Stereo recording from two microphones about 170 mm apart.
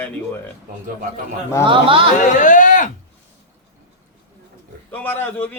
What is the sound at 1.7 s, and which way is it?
Speech, 30° right (ahead or behind).